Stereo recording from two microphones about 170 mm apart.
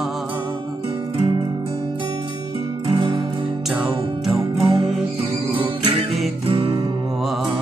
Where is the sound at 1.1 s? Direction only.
30° right (ahead or behind).